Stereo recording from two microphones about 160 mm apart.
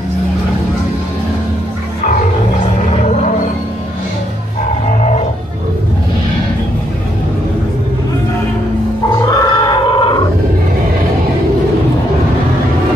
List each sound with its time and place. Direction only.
3.0 s music: 50° left (ahead or behind)
4.9 s cattle: 50° left (ahead or behind)
9.3 s a sound: 25° left (ahead or behind)